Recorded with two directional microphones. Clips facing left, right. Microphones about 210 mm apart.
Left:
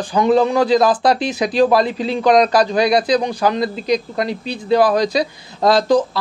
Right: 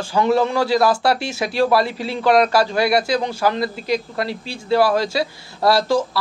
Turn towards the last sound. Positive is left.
turn(degrees=20)  # may be behind; listen again after turning